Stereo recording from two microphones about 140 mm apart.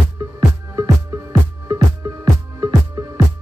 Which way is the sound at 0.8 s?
25° right (ahead or behind).